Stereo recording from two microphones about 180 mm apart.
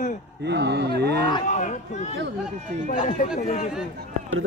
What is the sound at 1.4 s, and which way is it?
Speech, 40° left (ahead or behind).